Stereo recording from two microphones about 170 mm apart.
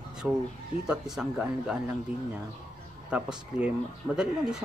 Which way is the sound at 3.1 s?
5° right (ahead or behind).